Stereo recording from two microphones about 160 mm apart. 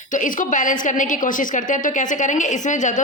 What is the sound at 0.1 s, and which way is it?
A woman's voice, 55° left (ahead or behind).